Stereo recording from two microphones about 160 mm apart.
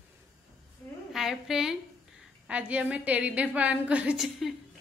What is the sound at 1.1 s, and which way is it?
A woman's voice, 5° right (ahead or behind).